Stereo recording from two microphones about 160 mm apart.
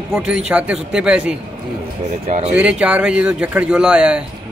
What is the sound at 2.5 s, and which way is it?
Speech, 5° right (ahead or behind).